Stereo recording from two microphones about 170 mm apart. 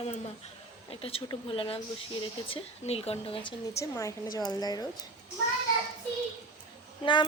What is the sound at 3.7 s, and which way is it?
A woman's voice, 20° left (ahead or behind).